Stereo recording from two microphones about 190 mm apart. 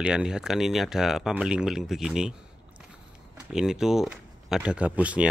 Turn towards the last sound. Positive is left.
turn(degrees=-5)  # may be behind; listen again after turning